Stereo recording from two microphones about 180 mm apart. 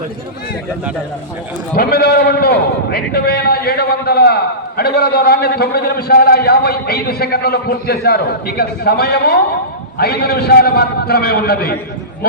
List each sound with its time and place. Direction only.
1.7 s a man's voice: 60° left (ahead or behind)